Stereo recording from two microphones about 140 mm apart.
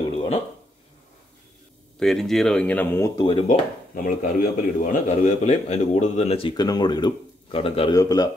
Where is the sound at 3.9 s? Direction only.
80° left.